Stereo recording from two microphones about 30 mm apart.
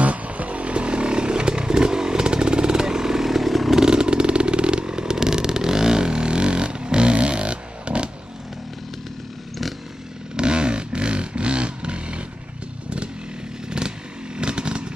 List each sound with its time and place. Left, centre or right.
0.0 s vehicle: right; by 3.7 s centre
3.7 s vehicle: right
10.3 s a sound: right
13.7 s motorcycle: right